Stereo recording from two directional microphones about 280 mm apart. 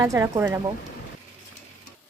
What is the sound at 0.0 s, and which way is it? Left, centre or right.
Speech, centre.